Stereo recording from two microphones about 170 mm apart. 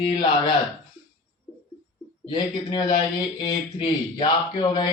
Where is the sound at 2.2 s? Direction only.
25° left (ahead or behind).